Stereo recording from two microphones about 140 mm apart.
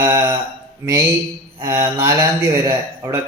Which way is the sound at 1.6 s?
20° right (ahead or behind).